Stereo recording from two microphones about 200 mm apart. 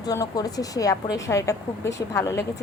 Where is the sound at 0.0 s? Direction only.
20° left (ahead or behind).